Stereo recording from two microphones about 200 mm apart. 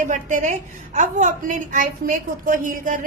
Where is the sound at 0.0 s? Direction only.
40° right (ahead or behind).